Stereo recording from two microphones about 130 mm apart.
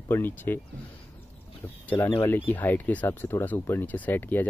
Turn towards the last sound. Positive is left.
turn(degrees=15)  # may be behind; listen again after turning